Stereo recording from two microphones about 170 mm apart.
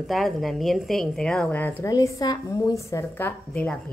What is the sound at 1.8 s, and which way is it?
A woman's voice, 20° left (ahead or behind).